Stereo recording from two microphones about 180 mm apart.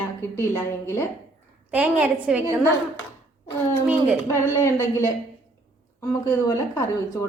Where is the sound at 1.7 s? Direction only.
10° right (ahead or behind).